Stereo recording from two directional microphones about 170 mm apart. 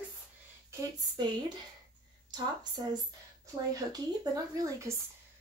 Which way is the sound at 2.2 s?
25° right (ahead or behind).